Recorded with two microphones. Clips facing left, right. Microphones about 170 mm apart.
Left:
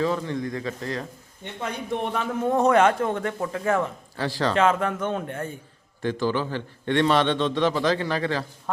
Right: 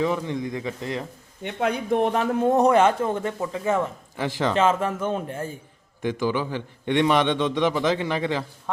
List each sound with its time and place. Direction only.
0.0 s speech: 15° right (ahead or behind)
1.5 s speech: 65° right (ahead or behind)
1.9 s speech: 45° right (ahead or behind)
2.5 s a man's voice: 15° right (ahead or behind)
2.7 s a man's voice: 5° right (ahead or behind); by 4.9 s 25° right (ahead or behind)
4.9 s a man's voice: 5° right (ahead or behind)